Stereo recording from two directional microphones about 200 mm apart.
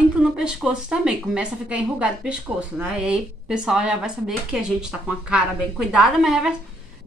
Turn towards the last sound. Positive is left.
turn(degrees=-5)  # may be behind; listen again after turning